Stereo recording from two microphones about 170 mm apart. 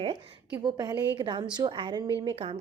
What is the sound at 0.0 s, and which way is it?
Speech, 30° right (ahead or behind).